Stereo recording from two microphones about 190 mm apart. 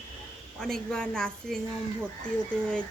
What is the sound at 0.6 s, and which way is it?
Speech, 5° left (ahead or behind).